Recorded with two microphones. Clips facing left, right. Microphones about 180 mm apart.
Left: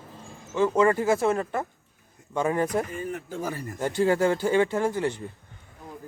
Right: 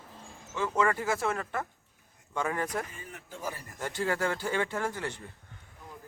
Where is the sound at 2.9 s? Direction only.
55° left (ahead or behind).